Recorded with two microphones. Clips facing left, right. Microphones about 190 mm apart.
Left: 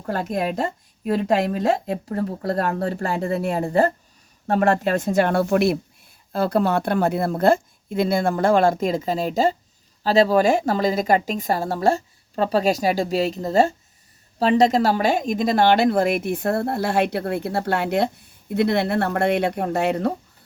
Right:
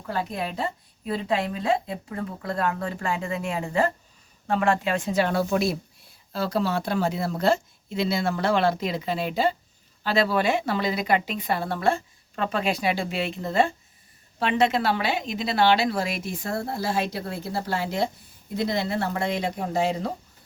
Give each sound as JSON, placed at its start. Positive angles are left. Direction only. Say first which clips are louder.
{"t": 0.0, "sound": "a woman's voice", "louder": "left 5 dB", "side_deg": 45}